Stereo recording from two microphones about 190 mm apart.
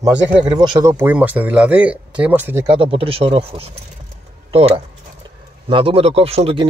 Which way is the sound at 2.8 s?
30° right (ahead or behind).